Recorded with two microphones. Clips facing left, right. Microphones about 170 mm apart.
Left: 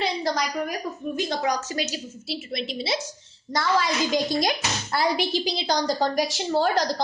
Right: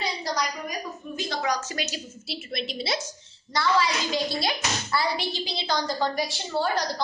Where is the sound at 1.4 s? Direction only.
35° left (ahead or behind).